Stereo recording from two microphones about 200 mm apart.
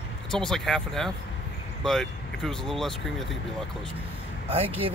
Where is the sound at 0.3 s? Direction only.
5° left (ahead or behind).